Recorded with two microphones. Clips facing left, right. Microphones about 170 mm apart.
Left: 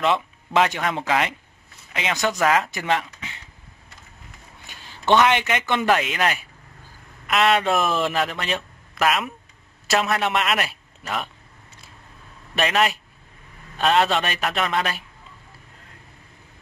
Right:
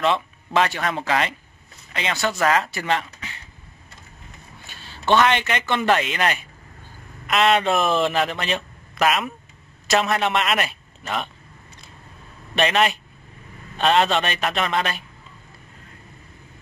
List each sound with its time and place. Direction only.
0.0 s speech: 15° left (ahead or behind)
4.6 s a man's voice: 15° left (ahead or behind)
12.5 s a man's voice: centre (ahead or behind)